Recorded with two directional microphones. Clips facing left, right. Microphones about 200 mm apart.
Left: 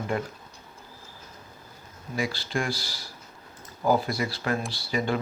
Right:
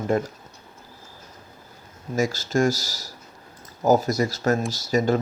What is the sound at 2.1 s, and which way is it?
Speech, 45° right (ahead or behind).